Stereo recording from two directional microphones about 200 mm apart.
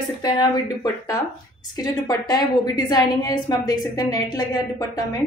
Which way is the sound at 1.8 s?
20° left (ahead or behind).